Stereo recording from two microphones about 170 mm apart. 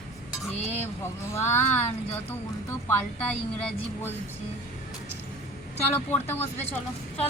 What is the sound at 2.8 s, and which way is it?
A woman's voice, 10° left (ahead or behind).